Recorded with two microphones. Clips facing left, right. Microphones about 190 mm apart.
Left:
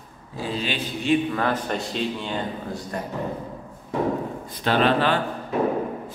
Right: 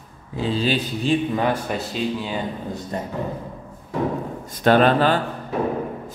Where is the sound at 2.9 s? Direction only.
25° right (ahead or behind).